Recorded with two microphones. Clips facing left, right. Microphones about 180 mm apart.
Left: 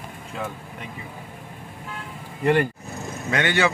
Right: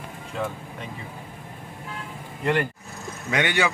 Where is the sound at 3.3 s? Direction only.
15° right (ahead or behind).